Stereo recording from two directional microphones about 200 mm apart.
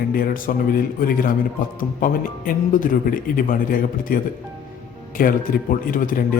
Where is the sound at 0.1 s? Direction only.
45° left (ahead or behind).